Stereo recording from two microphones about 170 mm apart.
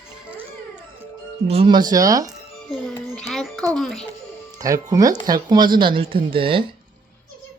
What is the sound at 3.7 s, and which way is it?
Speech, centre (ahead or behind).